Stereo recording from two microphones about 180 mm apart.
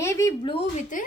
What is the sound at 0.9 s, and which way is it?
Speech, 45° left (ahead or behind).